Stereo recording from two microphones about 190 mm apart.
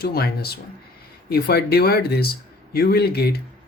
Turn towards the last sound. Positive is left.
turn(degrees=55)  # may be behind; listen again after turning